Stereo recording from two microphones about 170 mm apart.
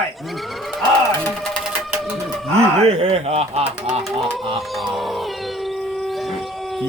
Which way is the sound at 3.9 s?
Centre (ahead or behind).